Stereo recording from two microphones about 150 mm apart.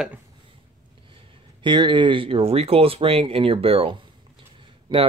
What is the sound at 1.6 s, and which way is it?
Speech, 30° right (ahead or behind).